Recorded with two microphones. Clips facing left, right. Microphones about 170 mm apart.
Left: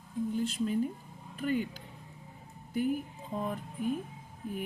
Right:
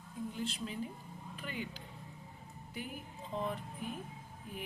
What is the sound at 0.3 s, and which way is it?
Speech, 45° left (ahead or behind).